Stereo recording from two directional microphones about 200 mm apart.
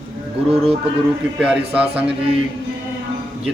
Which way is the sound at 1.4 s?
5° right (ahead or behind).